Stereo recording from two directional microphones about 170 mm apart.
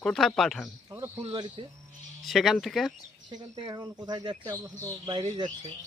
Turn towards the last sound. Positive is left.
turn(degrees=-25)  # may be behind; listen again after turning